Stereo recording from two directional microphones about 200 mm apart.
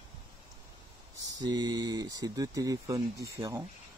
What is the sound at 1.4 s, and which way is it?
Speech, 20° right (ahead or behind).